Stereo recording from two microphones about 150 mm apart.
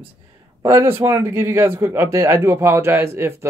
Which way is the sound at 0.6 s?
20° right (ahead or behind).